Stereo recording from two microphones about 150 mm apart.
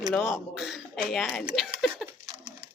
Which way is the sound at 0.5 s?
Centre (ahead or behind).